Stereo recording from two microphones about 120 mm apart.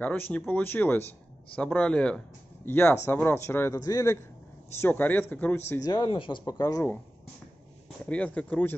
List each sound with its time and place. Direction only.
0.0 s speech: 15° left (ahead or behind)
2.7 s speech: 20° left (ahead or behind)
4.7 s speech: 15° left (ahead or behind)
5.8 s speech: 35° left (ahead or behind)
6.4 s speech: 30° left (ahead or behind)
8.1 s speech: 10° left (ahead or behind)